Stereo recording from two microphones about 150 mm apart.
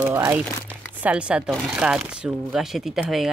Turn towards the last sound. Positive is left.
turn(degrees=-5)  # may be behind; listen again after turning